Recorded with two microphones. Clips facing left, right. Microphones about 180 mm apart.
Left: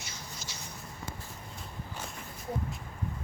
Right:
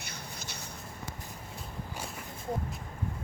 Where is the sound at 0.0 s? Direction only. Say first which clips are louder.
Right 1 dB; 60° right (ahead or behind).